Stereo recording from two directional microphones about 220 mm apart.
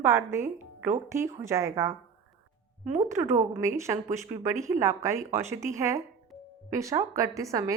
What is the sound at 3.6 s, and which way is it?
A woman's voice, 15° right (ahead or behind).